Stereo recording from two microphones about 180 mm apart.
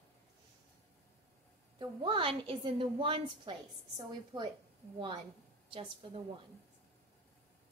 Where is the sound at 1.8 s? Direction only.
25° right (ahead or behind).